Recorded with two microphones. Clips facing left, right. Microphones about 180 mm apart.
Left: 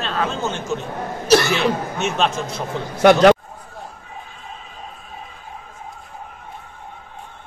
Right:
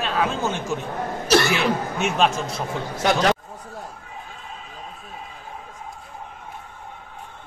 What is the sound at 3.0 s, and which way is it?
Speech, 65° left (ahead or behind).